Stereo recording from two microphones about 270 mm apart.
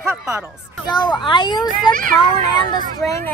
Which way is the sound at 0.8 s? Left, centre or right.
Centre.